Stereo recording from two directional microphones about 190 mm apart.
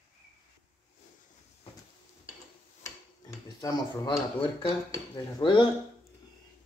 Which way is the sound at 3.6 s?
20° left (ahead or behind).